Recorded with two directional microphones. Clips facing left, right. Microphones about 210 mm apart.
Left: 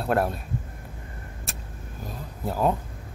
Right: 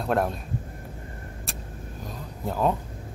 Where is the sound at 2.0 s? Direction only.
5° left (ahead or behind).